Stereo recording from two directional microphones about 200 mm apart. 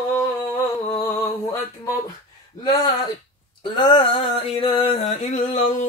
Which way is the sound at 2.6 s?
20° left (ahead or behind).